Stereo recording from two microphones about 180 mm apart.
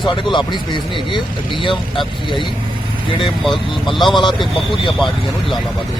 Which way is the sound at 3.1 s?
30° left (ahead or behind).